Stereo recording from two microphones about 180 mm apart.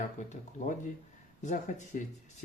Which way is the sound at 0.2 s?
40° left (ahead or behind).